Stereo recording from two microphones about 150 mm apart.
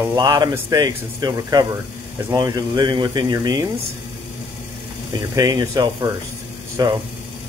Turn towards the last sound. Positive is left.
turn(degrees=-25)  # may be behind; listen again after turning